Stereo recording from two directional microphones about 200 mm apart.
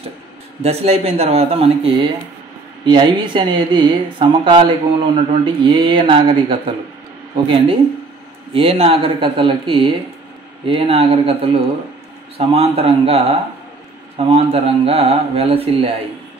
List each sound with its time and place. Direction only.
0.6 s speech: 30° right (ahead or behind)
8.5 s speech: 30° right (ahead or behind)